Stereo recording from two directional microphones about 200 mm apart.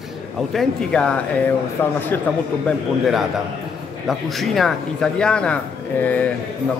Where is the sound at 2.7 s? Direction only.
Centre (ahead or behind).